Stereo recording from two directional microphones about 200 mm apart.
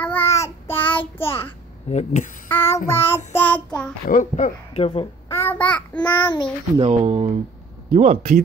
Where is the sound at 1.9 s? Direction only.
35° left (ahead or behind).